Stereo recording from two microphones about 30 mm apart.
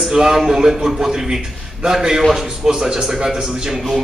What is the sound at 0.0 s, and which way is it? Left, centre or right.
A man's voice, centre.